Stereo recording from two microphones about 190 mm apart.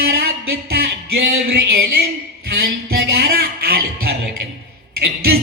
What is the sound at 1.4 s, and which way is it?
Speech, 60° right (ahead or behind).